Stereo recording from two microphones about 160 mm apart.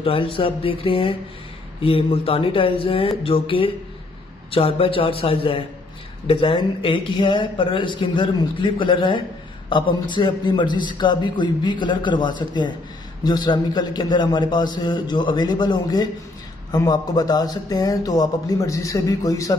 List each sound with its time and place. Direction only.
0.0 s a man's voice: 35° left (ahead or behind)